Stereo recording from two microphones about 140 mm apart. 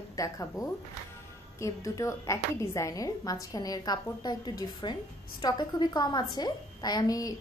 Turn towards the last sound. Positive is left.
turn(degrees=25)  # may be behind; listen again after turning